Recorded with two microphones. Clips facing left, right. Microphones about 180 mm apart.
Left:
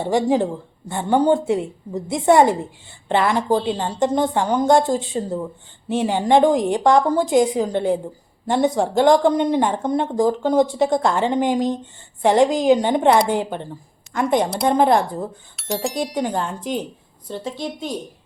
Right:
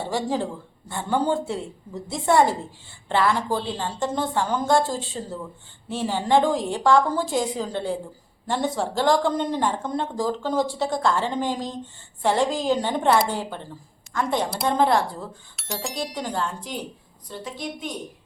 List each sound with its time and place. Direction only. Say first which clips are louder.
0.0 s speech: left 7 dB; 15° left (ahead or behind)
15.5 s speech: left 8 dB; centre (ahead or behind)
16.1 s speech: left 5 dB; 20° left (ahead or behind)